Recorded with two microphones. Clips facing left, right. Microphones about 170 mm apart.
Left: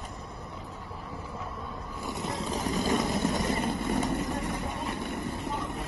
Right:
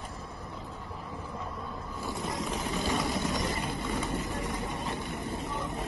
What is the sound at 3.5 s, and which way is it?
Vehicle, 55° left (ahead or behind).